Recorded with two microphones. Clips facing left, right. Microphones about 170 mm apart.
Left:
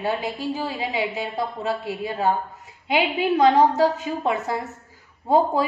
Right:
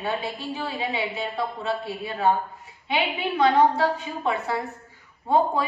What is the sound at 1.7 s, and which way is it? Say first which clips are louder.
A woman's voice: left 2 dB; 40° left (ahead or behind).